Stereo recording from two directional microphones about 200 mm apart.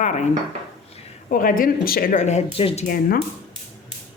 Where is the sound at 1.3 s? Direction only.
45° left (ahead or behind); by 2.8 s 30° left (ahead or behind).